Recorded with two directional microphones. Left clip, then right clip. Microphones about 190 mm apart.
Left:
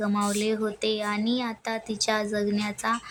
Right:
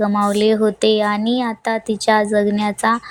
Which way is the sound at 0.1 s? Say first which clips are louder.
Right 10 dB; 20° right (ahead or behind).